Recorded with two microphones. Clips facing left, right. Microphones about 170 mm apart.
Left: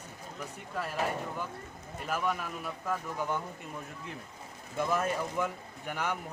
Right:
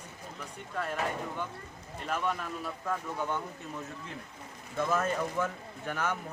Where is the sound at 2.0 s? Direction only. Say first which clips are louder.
Even; 5° left (ahead or behind).